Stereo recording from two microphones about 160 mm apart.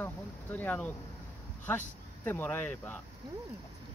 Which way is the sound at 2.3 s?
10° left (ahead or behind).